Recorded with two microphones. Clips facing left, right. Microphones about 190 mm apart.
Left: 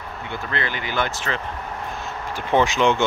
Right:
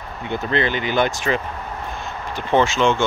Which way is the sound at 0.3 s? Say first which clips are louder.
Right 7 dB; 20° right (ahead or behind).